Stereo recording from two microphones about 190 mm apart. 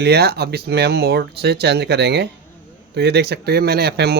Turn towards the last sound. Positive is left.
turn(degrees=-60)  # may be behind; listen again after turning